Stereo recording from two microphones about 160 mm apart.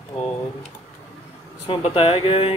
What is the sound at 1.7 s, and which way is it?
Speech, 35° left (ahead or behind).